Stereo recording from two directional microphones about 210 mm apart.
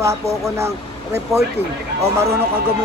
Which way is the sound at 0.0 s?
15° right (ahead or behind).